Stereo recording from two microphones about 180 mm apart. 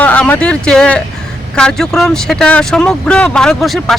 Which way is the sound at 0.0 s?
10° left (ahead or behind).